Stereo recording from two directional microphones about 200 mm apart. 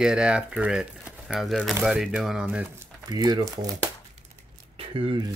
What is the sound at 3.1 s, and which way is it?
Speech, 20° right (ahead or behind).